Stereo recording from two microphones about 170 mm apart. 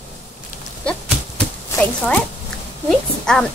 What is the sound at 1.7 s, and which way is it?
A woman's voice, 10° left (ahead or behind).